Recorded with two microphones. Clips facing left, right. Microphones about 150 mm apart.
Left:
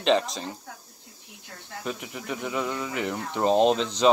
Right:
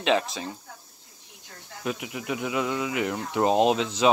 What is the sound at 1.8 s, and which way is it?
Speech, 5° right (ahead or behind).